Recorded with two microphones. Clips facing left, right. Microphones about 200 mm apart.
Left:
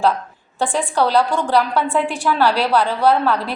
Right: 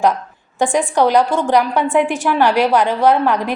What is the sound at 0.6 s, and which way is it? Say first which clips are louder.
A woman's voice: right 4 dB; 15° right (ahead or behind).